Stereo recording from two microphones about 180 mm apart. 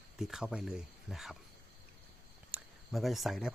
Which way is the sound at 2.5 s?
5° right (ahead or behind).